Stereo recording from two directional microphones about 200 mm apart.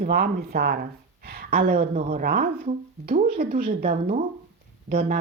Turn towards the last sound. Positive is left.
turn(degrees=-50)  # may be behind; listen again after turning